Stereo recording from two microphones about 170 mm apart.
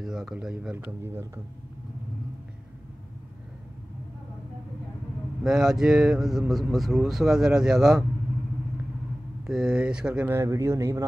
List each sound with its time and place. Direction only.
0.0 s speech: 5° right (ahead or behind)
5.4 s speech: 5° right (ahead or behind)
9.5 s speech: 5° right (ahead or behind)